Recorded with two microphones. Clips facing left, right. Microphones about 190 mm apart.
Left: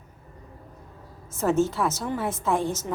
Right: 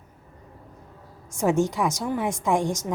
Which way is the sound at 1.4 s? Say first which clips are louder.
Right 1 dB; 15° right (ahead or behind).